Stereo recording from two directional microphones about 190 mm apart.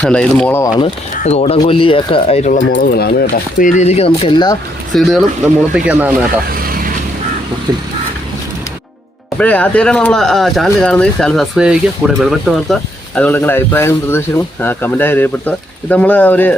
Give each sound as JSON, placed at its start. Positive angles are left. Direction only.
{"t": 0.0, "sound": "speech", "side_deg": 5}
{"t": 1.2, "sound": "speech", "side_deg": 35}
{"t": 2.7, "sound": "speech", "side_deg": 55}
{"t": 4.9, "sound": "speech", "side_deg": 0}
{"t": 6.5, "sound": "vehicle", "side_deg": -50}
{"t": 7.7, "sound": "vehicle", "side_deg": -20}
{"t": 9.4, "sound": "speech", "side_deg": 5}